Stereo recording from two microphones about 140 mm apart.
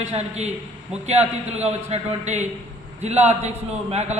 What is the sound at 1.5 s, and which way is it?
A man's voice, 50° right (ahead or behind).